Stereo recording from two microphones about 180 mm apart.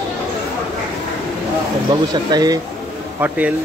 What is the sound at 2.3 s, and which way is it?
Speech, 20° right (ahead or behind).